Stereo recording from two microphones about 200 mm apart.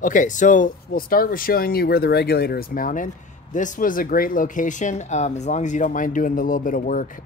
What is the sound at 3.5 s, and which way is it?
Speech, 40° left (ahead or behind).